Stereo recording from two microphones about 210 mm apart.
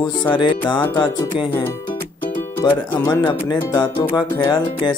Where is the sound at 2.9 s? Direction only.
15° left (ahead or behind).